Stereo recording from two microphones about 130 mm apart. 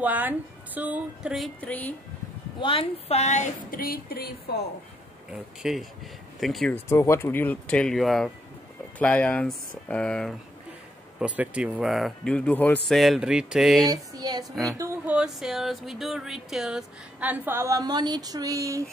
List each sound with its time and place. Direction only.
0.0 s speech: 15° right (ahead or behind)
1.6 s speech: 10° left (ahead or behind)
2.6 s a woman's voice: 45° left (ahead or behind); by 3.8 s 65° left (ahead or behind)
5.3 s speech: 5° right (ahead or behind)
6.7 s speech: 20° left (ahead or behind)
11.1 s speech: 10° right (ahead or behind)
12.3 s speech: 10° left (ahead or behind)
12.8 s speech: centre (ahead or behind)
13.8 s speech: 30° right (ahead or behind)
14.5 s speech: centre (ahead or behind); by 18.9 s 25° right (ahead or behind)